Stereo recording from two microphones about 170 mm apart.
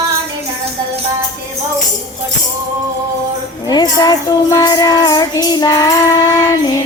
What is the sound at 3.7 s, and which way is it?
Music, 25° left (ahead or behind).